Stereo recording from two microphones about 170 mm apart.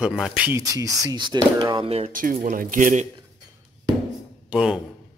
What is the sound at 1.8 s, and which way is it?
Speech, 35° right (ahead or behind).